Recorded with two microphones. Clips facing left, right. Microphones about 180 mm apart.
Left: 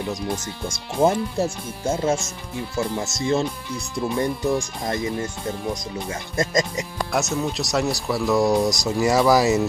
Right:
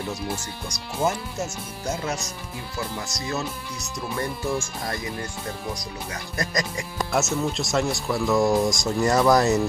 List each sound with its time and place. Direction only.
1.0 s speech: 30° left (ahead or behind)
6.3 s speech: 25° left (ahead or behind)
7.1 s speech: centre (ahead or behind)